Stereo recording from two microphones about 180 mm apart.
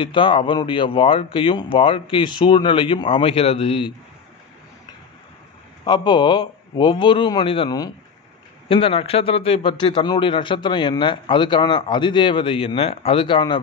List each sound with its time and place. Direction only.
0.0 s a man's voice: 30° left (ahead or behind)
5.9 s a man's voice: 25° left (ahead or behind)